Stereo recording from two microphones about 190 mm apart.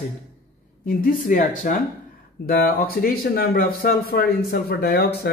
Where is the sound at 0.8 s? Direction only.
45° left (ahead or behind).